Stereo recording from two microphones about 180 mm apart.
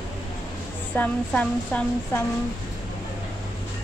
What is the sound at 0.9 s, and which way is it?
Speech, 10° left (ahead or behind).